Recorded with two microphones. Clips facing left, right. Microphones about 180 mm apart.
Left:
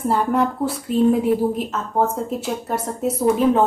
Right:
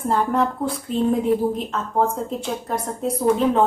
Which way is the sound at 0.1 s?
10° left (ahead or behind).